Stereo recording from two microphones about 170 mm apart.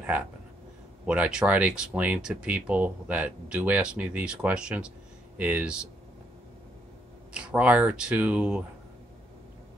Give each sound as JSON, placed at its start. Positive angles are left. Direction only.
{"t": 1.0, "sound": "speech", "side_deg": -5}
{"t": 7.3, "sound": "speech", "side_deg": -10}